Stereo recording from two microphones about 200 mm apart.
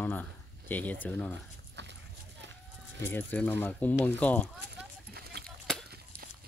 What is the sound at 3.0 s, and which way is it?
Speech, 10° left (ahead or behind).